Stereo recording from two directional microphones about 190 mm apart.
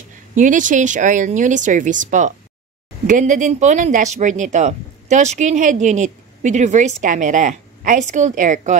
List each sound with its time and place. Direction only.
0.3 s a woman's voice: 40° right (ahead or behind)